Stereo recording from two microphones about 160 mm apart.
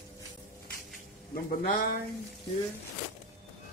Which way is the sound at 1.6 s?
60° left (ahead or behind).